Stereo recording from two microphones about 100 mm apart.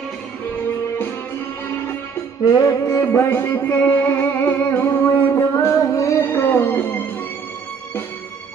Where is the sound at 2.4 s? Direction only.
35° left (ahead or behind); by 7.0 s 20° left (ahead or behind).